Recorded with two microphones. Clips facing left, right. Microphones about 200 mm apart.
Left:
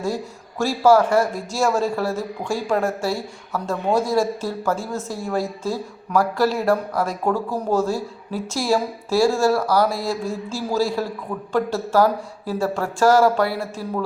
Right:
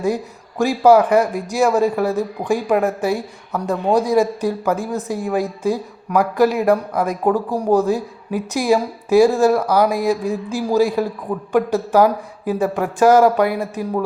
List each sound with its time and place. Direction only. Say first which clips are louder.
0.6 s a woman's voice: right 3 dB; 15° right (ahead or behind)